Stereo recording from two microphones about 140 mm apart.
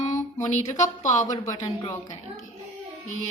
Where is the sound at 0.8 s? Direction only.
60° left (ahead or behind).